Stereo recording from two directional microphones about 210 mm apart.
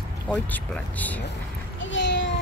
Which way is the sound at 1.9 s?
60° left (ahead or behind).